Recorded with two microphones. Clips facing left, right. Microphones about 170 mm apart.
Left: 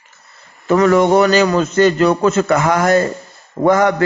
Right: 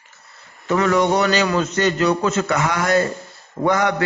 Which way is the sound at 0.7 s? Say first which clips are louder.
Left 6 dB; 45° left (ahead or behind).